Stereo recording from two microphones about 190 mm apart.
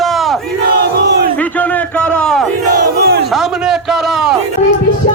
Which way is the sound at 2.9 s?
55° right (ahead or behind).